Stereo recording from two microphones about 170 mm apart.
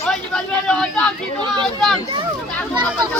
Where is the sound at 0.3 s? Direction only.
5° left (ahead or behind).